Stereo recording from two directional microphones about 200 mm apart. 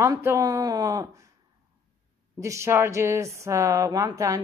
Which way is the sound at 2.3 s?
15° right (ahead or behind).